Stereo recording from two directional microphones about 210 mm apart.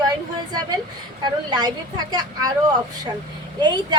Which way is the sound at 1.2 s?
20° right (ahead or behind).